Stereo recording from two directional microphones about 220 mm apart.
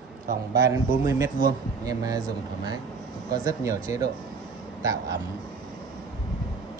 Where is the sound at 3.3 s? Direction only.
15° right (ahead or behind).